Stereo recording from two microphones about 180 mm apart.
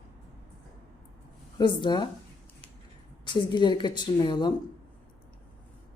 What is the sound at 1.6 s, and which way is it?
Speech, 25° left (ahead or behind).